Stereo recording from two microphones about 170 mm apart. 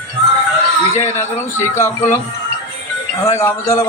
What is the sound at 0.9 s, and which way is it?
Speech, 15° left (ahead or behind).